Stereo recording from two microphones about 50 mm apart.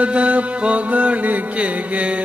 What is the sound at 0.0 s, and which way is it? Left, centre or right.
Mantra, right.